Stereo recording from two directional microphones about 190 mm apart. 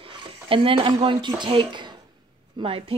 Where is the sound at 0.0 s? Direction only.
25° right (ahead or behind).